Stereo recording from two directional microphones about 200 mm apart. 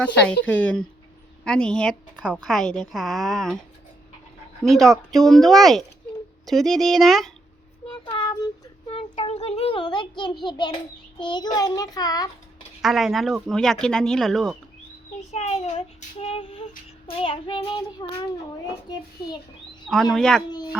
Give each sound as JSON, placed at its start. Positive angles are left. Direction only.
{"t": 0.0, "sound": "a woman's voice", "side_deg": 5}
{"t": 4.6, "sound": "a woman's voice", "side_deg": 0}
{"t": 7.9, "sound": "child singing", "side_deg": 20}
{"t": 8.9, "sound": "a child's voice", "side_deg": 30}
{"t": 11.2, "sound": "child singing", "side_deg": 20}
{"t": 12.8, "sound": "a woman's voice", "side_deg": 0}
{"t": 15.3, "sound": "child singing", "side_deg": 35}
{"t": 19.9, "sound": "a woman's voice", "side_deg": 0}
{"t": 20.5, "sound": "child singing", "side_deg": 20}